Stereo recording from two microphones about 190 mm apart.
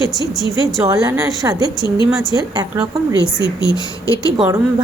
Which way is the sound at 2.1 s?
Centre (ahead or behind).